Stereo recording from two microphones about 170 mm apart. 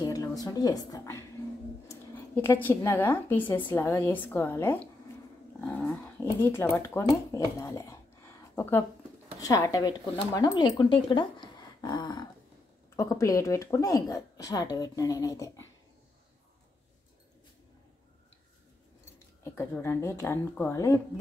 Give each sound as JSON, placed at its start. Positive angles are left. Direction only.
{"t": 0.0, "sound": "a woman's voice", "side_deg": 20}
{"t": 19.4, "sound": "a woman's voice", "side_deg": 10}